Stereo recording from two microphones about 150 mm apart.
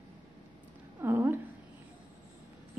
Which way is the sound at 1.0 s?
15° right (ahead or behind).